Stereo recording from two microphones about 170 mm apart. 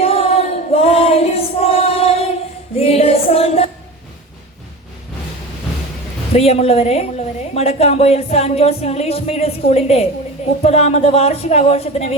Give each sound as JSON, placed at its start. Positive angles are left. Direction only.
{"t": 0.0, "sound": "choir", "side_deg": 35}
{"t": 2.7, "sound": "a sound", "side_deg": 35}
{"t": 6.3, "sound": "a woman's voice", "side_deg": 35}